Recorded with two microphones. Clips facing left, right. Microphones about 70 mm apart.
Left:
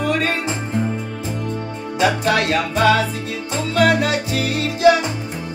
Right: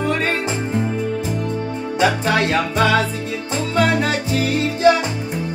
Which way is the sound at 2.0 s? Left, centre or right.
Right.